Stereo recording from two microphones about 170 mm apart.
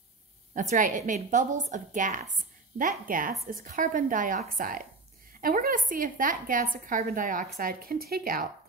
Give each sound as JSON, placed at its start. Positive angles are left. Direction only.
{"t": 0.6, "sound": "a woman's voice", "side_deg": -50}